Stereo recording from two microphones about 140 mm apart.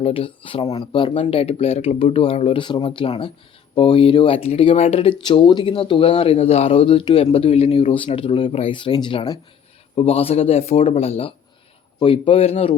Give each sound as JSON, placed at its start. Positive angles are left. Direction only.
{"t": 0.0, "sound": "speech", "side_deg": 40}
{"t": 9.9, "sound": "speech", "side_deg": 45}